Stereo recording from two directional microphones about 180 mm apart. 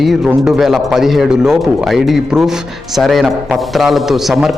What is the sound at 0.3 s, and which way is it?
A man's voice, 5° right (ahead or behind).